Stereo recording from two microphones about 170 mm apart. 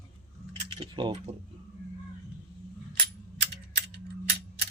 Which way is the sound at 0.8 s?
25° right (ahead or behind).